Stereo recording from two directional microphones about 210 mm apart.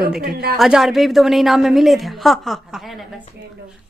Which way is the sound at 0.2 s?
45° right (ahead or behind).